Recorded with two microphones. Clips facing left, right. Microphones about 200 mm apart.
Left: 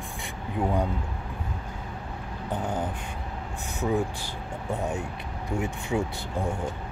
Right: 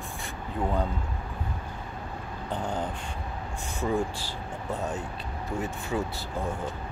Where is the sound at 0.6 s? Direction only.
10° left (ahead or behind).